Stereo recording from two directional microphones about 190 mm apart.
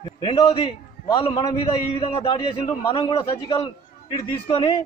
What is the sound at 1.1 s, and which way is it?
A man's voice, 25° left (ahead or behind).